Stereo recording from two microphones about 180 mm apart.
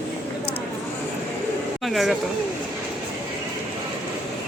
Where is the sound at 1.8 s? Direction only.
Centre (ahead or behind).